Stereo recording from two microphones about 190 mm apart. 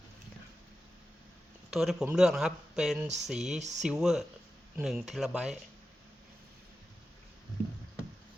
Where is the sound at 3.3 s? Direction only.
5° right (ahead or behind).